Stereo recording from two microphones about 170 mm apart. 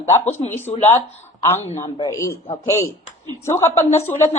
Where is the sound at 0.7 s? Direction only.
35° left (ahead or behind).